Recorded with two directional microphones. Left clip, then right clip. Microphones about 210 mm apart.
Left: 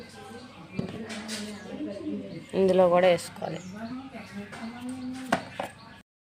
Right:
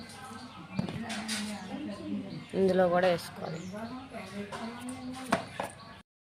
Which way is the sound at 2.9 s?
15° left (ahead or behind).